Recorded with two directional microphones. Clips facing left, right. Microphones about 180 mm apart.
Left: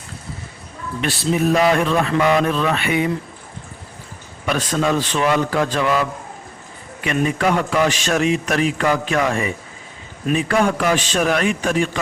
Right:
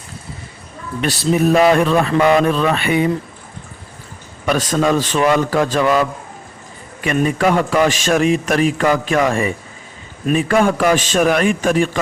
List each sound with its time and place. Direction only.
1.0 s a man's voice: 45° right (ahead or behind)
1.7 s mantra: 35° right (ahead or behind)
4.4 s a man's voice: 45° right (ahead or behind)
7.0 s a man's voice: 45° right (ahead or behind)